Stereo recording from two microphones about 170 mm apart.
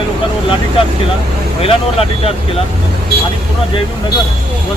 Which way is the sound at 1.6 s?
35° left (ahead or behind).